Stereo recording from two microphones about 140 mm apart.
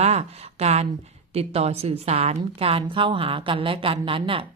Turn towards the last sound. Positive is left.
turn(degrees=-40)  # may be behind; listen again after turning